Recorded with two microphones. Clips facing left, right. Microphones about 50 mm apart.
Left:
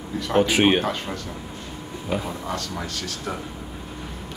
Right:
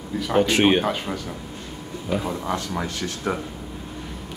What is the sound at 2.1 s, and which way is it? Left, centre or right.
Speech, centre.